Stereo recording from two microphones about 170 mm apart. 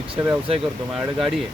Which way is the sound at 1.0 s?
Centre (ahead or behind).